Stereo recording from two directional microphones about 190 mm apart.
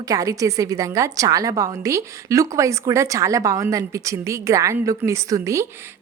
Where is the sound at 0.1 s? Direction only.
20° right (ahead or behind).